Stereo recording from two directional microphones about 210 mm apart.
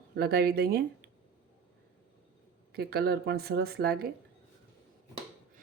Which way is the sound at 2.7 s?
50° right (ahead or behind).